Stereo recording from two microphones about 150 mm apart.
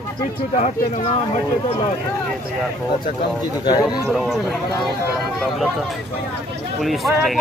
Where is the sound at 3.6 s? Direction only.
30° left (ahead or behind).